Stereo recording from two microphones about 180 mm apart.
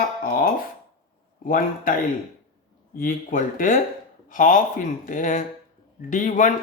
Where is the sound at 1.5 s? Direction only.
50° left (ahead or behind).